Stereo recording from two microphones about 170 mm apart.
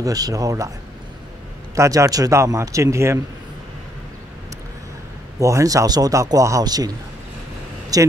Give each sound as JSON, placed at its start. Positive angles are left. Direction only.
{"t": 0.0, "sound": "speech", "side_deg": -20}
{"t": 1.8, "sound": "speech", "side_deg": -20}
{"t": 5.4, "sound": "speech", "side_deg": -20}
{"t": 7.9, "sound": "speech", "side_deg": -20}